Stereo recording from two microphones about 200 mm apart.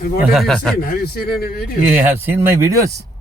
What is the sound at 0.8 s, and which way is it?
Speech, 50° left (ahead or behind).